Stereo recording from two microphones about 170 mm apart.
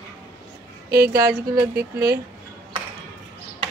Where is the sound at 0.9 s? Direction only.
65° right (ahead or behind).